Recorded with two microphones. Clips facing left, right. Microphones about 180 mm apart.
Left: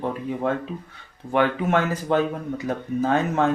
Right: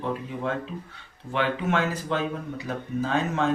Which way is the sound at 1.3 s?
45° left (ahead or behind).